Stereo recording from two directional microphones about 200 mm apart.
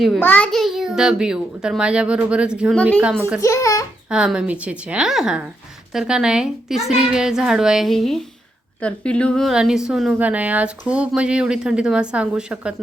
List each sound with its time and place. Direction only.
0.0 s a woman's voice: 5° left (ahead or behind)
3.4 s a child's voice: 15° left (ahead or behind)
4.1 s a woman's voice: 5° right (ahead or behind)